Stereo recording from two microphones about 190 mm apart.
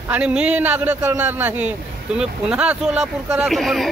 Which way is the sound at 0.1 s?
5° right (ahead or behind).